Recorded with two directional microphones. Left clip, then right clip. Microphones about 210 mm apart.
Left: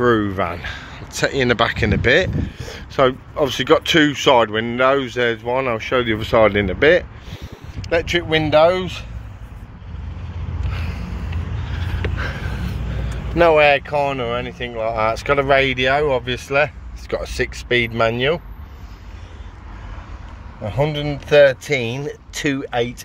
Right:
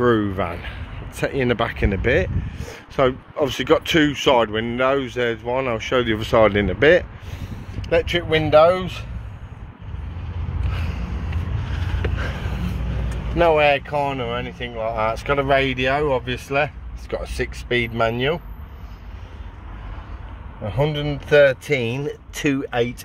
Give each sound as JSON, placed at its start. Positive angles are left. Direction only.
{"t": 0.0, "sound": "speech", "side_deg": 0}
{"t": 10.7, "sound": "vehicle", "side_deg": -5}
{"t": 13.4, "sound": "speech", "side_deg": 10}
{"t": 20.6, "sound": "speech", "side_deg": 5}
{"t": 21.6, "sound": "speech", "side_deg": -10}